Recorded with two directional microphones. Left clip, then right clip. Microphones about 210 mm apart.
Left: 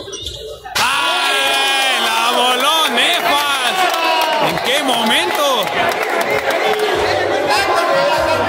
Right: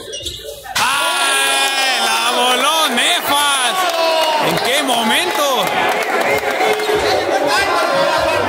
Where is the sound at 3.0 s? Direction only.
25° right (ahead or behind).